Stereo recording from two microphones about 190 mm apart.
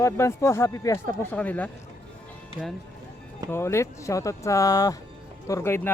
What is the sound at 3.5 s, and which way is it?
Speech, 15° left (ahead or behind).